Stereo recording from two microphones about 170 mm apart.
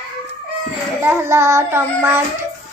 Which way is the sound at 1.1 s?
15° right (ahead or behind).